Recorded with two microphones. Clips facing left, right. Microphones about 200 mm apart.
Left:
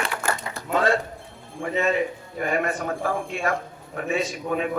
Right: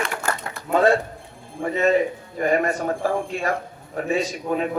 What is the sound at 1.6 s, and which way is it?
A man's voice, 40° right (ahead or behind).